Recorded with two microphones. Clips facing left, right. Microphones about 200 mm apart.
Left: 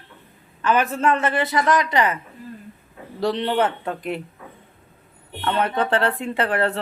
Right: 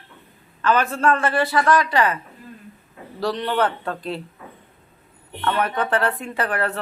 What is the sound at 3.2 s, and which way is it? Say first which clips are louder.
A man's voice: left 1 dB; 25° left (ahead or behind).